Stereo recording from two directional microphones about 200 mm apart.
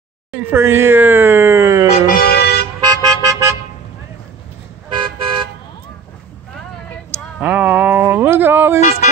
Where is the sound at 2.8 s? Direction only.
20° right (ahead or behind).